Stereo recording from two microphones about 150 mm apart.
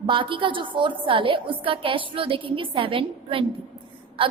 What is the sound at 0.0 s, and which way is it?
A woman's voice, 35° right (ahead or behind).